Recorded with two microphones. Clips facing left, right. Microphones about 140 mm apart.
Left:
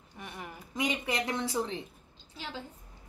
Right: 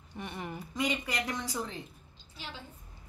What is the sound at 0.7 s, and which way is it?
Speech, 20° left (ahead or behind).